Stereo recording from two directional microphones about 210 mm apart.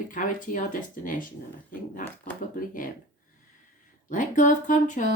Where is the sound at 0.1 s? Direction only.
40° left (ahead or behind).